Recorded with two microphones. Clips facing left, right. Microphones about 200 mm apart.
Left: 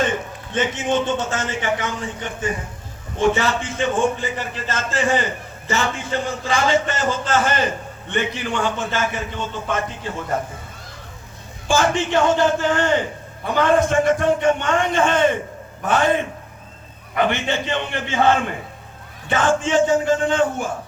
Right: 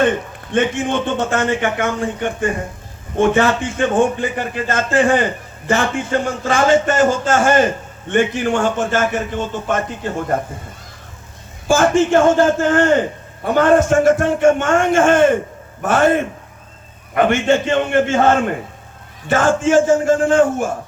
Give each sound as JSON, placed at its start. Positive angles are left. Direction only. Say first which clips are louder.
{"t": 0.5, "sound": "a man's voice", "louder": "right 3 dB", "side_deg": -55}
{"t": 11.7, "sound": "a man's voice", "louder": "right 6 dB", "side_deg": -50}